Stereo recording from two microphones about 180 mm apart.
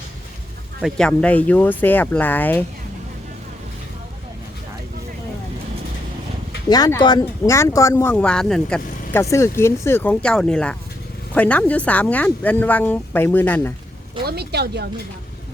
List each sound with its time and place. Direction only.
0.8 s speech: centre (ahead or behind)
6.7 s speech: 20° left (ahead or behind); by 9.2 s 5° left (ahead or behind)
9.2 s speech: 15° left (ahead or behind)
14.3 s speech: 65° right (ahead or behind)